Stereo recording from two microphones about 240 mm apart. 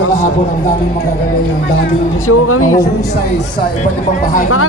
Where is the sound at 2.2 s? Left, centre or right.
Left.